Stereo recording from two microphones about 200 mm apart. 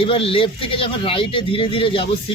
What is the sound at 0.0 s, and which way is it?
Speech, 30° left (ahead or behind).